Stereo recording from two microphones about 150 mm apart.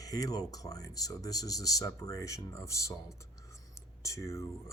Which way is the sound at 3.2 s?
20° left (ahead or behind).